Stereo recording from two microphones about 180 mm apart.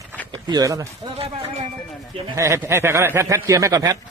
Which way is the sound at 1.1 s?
35° right (ahead or behind).